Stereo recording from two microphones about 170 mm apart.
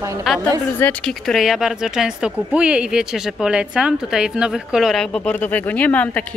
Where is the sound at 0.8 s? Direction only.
5° left (ahead or behind).